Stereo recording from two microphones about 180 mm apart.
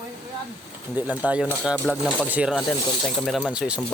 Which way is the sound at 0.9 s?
10° right (ahead or behind).